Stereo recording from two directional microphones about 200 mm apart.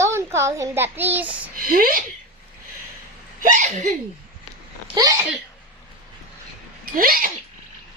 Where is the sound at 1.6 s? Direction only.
45° right (ahead or behind).